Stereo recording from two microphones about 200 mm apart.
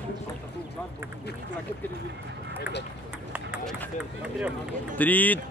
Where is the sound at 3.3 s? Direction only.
5° right (ahead or behind).